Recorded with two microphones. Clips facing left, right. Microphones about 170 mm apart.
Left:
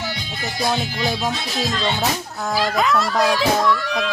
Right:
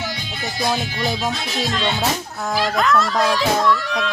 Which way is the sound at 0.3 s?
Centre (ahead or behind).